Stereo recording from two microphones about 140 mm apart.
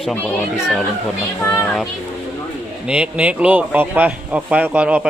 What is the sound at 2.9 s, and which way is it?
Speech, 5° right (ahead or behind).